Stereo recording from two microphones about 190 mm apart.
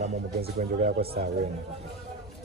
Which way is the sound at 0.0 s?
40° right (ahead or behind).